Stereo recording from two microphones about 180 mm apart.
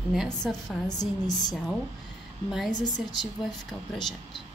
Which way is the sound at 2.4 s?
Centre (ahead or behind).